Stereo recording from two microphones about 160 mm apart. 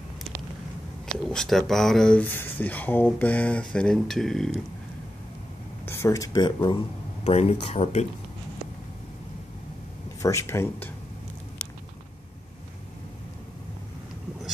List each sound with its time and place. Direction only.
1.1 s speech: 5° left (ahead or behind)
5.9 s speech: 15° left (ahead or behind)
7.2 s speech: 40° left (ahead or behind)
10.2 s speech: 20° left (ahead or behind)